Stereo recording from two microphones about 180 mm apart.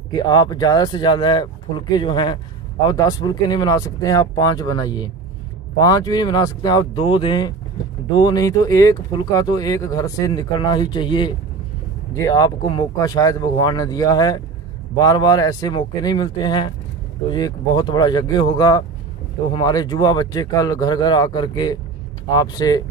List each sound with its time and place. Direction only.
0.1 s speech: 25° left (ahead or behind)